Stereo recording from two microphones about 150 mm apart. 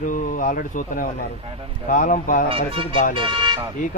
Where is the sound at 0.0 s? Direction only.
65° left (ahead or behind).